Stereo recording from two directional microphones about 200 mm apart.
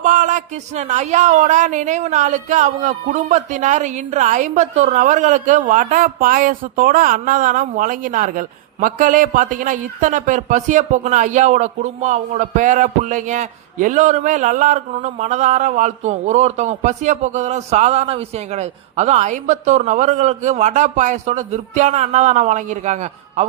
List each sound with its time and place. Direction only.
0.0 s speech: 40° right (ahead or behind)